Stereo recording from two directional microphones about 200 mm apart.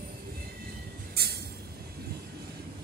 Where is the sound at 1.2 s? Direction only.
50° right (ahead or behind).